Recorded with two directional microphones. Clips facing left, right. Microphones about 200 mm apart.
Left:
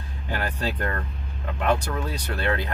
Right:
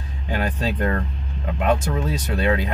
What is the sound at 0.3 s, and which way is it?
Speech, 15° right (ahead or behind).